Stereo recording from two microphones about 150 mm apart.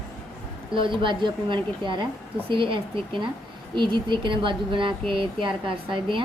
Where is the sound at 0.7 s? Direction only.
35° right (ahead or behind).